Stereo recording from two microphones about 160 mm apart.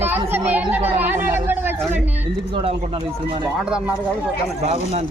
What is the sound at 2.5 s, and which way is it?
Speech, 35° right (ahead or behind).